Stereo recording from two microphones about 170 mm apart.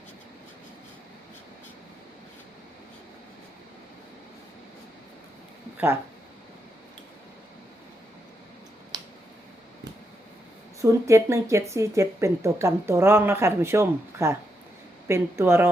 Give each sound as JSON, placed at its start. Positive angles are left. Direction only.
{"t": 5.7, "sound": "speech", "side_deg": -15}
{"t": 10.8, "sound": "speech", "side_deg": -15}